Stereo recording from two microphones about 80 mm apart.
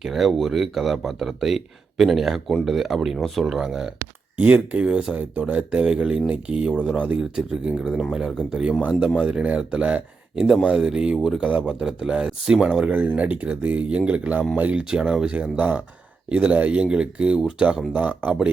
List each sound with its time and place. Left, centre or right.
0.0 s speech: centre
4.4 s speech: centre
12.8 s speech: centre